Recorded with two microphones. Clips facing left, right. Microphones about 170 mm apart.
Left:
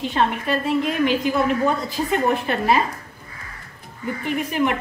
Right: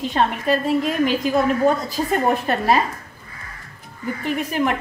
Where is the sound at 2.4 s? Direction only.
40° right (ahead or behind).